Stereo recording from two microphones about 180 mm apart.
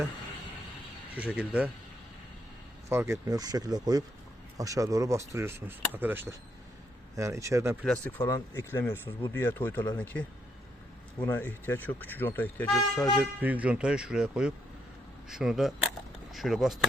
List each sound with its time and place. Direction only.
1.4 s speech: 5° right (ahead or behind)
2.9 s speech: 15° right (ahead or behind)
7.9 s speech: 10° left (ahead or behind)
13.1 s speech: 10° right (ahead or behind)